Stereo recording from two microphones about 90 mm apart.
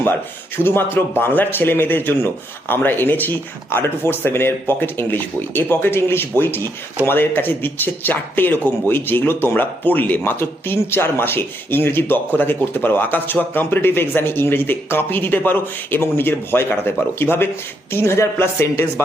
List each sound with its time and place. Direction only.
0.5 s speech: 25° left (ahead or behind)